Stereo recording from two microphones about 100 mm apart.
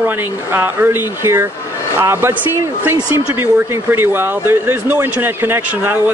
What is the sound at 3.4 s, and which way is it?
Speech, 25° right (ahead or behind).